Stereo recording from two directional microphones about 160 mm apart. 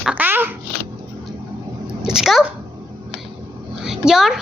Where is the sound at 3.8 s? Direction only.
5° right (ahead or behind).